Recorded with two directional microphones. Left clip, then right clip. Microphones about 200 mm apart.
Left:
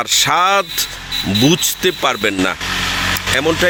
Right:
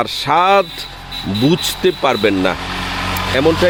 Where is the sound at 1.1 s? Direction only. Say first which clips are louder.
Left 4 dB; 40° right (ahead or behind).